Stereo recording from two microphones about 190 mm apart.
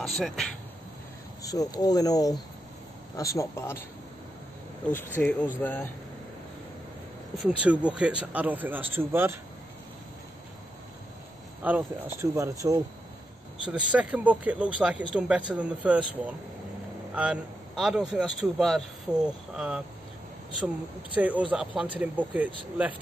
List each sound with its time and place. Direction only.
0.0 s speech: centre (ahead or behind)
1.4 s speech: 20° left (ahead or behind)
4.9 s speech: 10° left (ahead or behind)
7.4 s speech: 5° right (ahead or behind)
11.6 s speech: 10° right (ahead or behind)
13.7 s speech: 5° right (ahead or behind)